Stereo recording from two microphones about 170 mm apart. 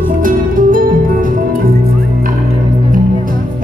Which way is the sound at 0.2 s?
50° right (ahead or behind).